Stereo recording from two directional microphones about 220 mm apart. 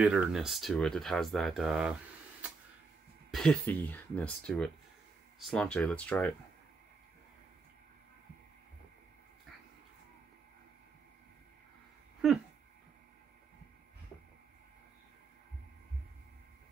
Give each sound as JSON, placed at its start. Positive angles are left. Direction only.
{"t": 0.0, "sound": "speech", "side_deg": -5}
{"t": 3.3, "sound": "speech", "side_deg": 0}